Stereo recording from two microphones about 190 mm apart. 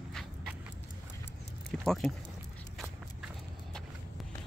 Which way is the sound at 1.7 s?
Centre (ahead or behind).